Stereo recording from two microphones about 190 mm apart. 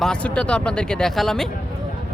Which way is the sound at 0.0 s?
5° left (ahead or behind).